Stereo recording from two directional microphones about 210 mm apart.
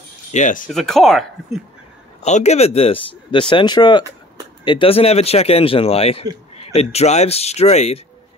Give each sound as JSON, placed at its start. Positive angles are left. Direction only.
{"t": 0.3, "sound": "speech", "side_deg": 35}
{"t": 0.7, "sound": "speech", "side_deg": 0}
{"t": 2.2, "sound": "speech", "side_deg": 30}